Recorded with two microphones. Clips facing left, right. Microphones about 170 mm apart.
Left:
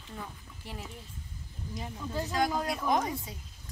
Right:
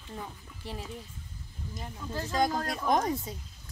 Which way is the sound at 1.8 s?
5° left (ahead or behind).